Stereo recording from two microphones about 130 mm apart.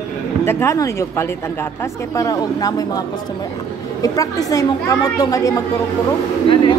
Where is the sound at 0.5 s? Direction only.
20° left (ahead or behind).